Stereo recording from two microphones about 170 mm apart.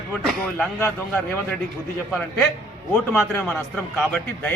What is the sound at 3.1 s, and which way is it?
A man's voice, 5° left (ahead or behind).